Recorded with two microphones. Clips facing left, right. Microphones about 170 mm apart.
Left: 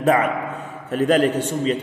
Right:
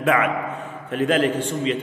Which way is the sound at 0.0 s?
35° left (ahead or behind).